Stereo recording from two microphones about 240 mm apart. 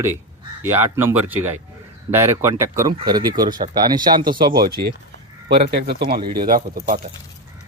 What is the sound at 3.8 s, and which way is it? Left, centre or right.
Speech, centre.